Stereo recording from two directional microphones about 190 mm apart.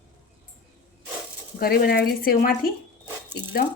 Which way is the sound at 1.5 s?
50° left (ahead or behind).